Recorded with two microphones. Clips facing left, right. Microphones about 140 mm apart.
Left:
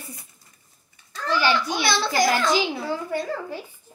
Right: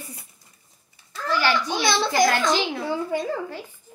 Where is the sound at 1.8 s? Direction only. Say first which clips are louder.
Right 2 dB; 20° right (ahead or behind).